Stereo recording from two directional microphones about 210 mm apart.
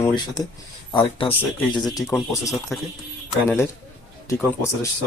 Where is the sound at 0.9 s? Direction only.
25° left (ahead or behind).